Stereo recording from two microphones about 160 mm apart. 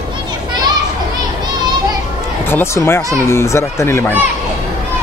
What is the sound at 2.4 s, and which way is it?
Speech, 15° left (ahead or behind).